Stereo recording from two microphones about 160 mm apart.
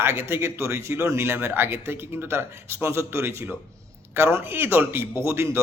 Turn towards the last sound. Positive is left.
turn(degrees=-15)  # may be behind; listen again after turning